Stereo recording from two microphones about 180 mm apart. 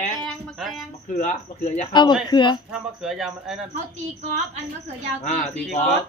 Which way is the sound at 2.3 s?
25° left (ahead or behind).